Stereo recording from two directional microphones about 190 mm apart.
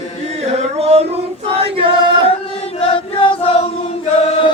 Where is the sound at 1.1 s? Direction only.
30° right (ahead or behind).